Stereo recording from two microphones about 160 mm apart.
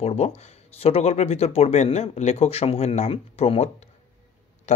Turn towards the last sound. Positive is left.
turn(degrees=40)  # may be behind; listen again after turning